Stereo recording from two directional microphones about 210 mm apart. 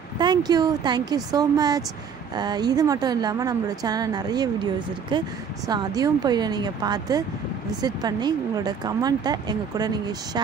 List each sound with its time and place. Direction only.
0.2 s a woman's voice: 20° right (ahead or behind)